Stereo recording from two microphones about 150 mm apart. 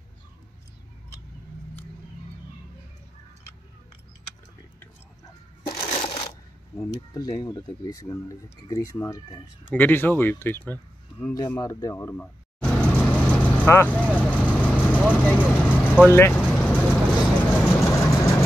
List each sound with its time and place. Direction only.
5.8 s crushing: 40° left (ahead or behind)
6.8 s speech: 25° left (ahead or behind)
11.3 s vehicle: 25° left (ahead or behind); by 15.0 s 10° left (ahead or behind)
15.0 s speech: 10° left (ahead or behind)
16.5 s vehicle: 5° left (ahead or behind)